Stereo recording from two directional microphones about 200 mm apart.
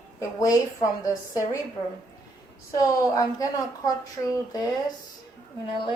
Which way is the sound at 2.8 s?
15° left (ahead or behind).